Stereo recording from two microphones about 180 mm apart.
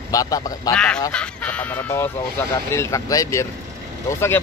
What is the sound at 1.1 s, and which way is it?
Speech, 5° left (ahead or behind).